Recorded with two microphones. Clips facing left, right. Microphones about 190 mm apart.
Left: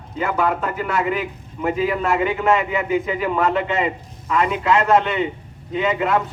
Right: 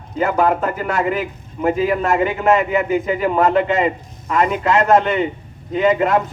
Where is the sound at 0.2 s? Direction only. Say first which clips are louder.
Right 4 dB; 45° right (ahead or behind).